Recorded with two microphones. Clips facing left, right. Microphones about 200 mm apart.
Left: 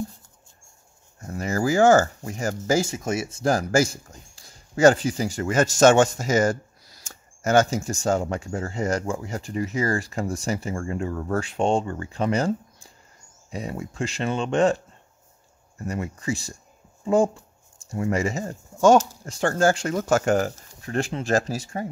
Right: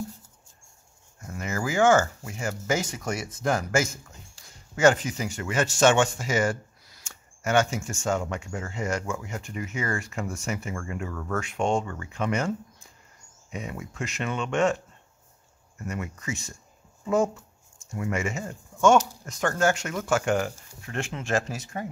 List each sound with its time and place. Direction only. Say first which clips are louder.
1.2 s speech: left 6 dB; 35° left (ahead or behind)
15.8 s speech: left 4 dB; 35° left (ahead or behind)